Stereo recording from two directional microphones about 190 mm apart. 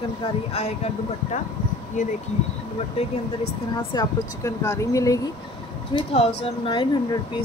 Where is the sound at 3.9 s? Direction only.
20° left (ahead or behind).